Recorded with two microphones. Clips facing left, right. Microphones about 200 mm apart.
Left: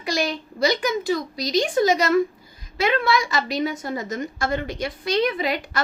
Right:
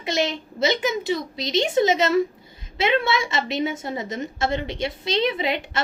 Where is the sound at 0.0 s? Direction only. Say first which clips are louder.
Right 1 dB; 25° right (ahead or behind).